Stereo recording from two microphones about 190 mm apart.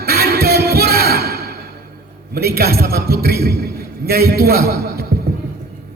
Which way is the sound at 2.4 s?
55° right (ahead or behind).